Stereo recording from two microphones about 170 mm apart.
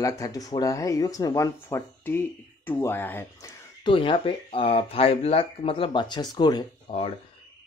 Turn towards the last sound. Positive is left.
turn(degrees=30)  # may be behind; listen again after turning